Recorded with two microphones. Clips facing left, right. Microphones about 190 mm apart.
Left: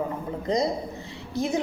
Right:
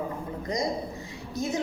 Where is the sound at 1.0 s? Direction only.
20° right (ahead or behind).